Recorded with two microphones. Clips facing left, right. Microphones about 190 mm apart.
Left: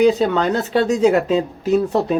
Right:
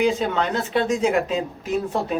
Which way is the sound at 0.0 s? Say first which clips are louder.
Left 6 dB; 40° left (ahead or behind).